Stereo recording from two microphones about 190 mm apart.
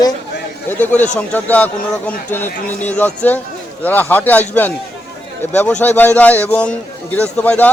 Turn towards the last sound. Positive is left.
turn(degrees=5)  # may be behind; listen again after turning